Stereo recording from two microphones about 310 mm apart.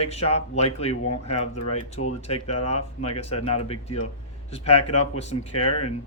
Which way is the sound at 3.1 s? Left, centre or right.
Centre.